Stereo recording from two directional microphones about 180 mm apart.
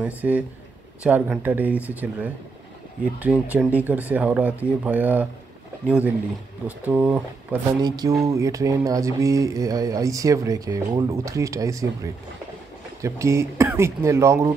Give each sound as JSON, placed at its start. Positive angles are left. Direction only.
{"t": 0.0, "sound": "speech", "side_deg": -10}
{"t": 3.5, "sound": "speech", "side_deg": -10}
{"t": 7.8, "sound": "speech", "side_deg": -20}